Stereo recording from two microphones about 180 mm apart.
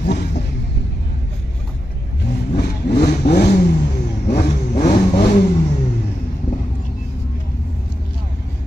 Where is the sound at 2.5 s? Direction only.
65° left (ahead or behind).